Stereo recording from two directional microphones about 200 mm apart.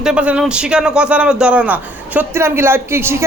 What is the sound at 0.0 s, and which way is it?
A man's voice, 5° right (ahead or behind).